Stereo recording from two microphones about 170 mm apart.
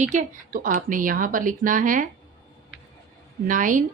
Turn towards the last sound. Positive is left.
turn(degrees=-50)  # may be behind; listen again after turning